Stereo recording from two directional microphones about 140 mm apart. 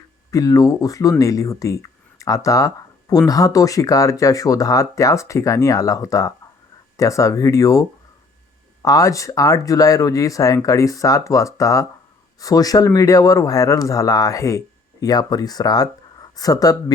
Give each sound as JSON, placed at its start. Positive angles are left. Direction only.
{"t": 0.3, "sound": "speech", "side_deg": 25}